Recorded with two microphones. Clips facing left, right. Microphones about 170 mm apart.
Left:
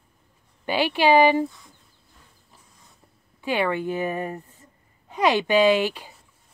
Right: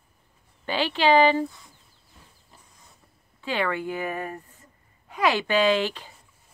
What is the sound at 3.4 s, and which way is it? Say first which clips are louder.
Speech: left 3 dB; 15° left (ahead or behind).